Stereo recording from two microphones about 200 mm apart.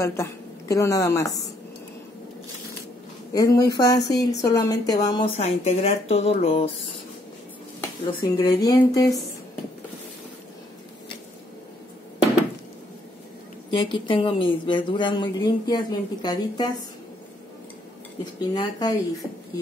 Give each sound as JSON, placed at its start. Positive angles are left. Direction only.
{"t": 0.0, "sound": "a woman's voice", "side_deg": 15}
{"t": 3.3, "sound": "speech", "side_deg": 15}
{"t": 5.4, "sound": "speech", "side_deg": 35}
{"t": 8.0, "sound": "speech", "side_deg": 25}
{"t": 13.7, "sound": "speech", "side_deg": 25}
{"t": 18.2, "sound": "speech", "side_deg": 20}